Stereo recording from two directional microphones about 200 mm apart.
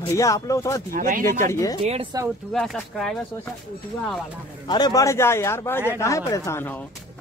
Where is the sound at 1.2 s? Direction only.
15° left (ahead or behind).